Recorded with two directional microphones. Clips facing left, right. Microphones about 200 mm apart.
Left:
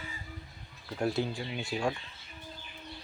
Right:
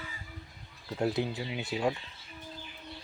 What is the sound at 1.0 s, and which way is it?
Speech, 20° right (ahead or behind).